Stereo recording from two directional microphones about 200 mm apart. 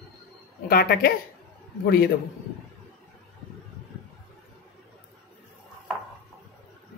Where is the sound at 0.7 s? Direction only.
50° left (ahead or behind).